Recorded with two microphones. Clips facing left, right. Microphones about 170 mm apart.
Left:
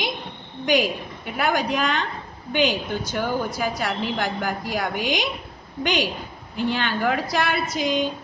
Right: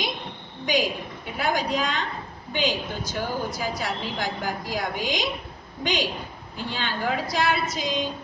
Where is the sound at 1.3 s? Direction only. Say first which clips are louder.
Left 2 dB; 65° left (ahead or behind).